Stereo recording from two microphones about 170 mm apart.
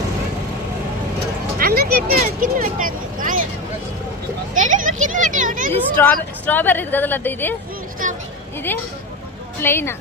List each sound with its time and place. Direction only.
1.5 s speech: 65° right (ahead or behind)
4.5 s speech: 50° right (ahead or behind)
6.0 s a woman's voice: 15° left (ahead or behind)
8.0 s a sound: 50° right (ahead or behind)
9.6 s a woman's voice: 15° left (ahead or behind)